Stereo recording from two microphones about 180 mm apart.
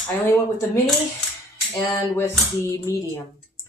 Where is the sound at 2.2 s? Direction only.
15° left (ahead or behind).